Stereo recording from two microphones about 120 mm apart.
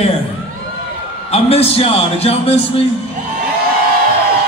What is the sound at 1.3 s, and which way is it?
A man's voice, 55° left (ahead or behind).